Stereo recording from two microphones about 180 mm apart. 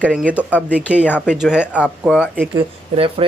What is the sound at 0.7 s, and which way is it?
Speech, 5° right (ahead or behind).